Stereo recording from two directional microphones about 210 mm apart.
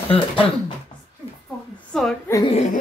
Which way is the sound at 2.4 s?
35° left (ahead or behind).